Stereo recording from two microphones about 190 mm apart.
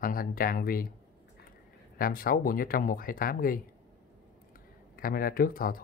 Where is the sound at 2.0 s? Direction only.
50° left (ahead or behind).